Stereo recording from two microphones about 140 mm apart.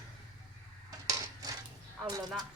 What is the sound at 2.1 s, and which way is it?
Speech, 30° right (ahead or behind).